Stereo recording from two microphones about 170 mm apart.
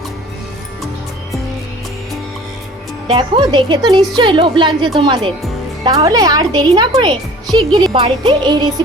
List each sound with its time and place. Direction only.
3.1 s speech: 30° right (ahead or behind)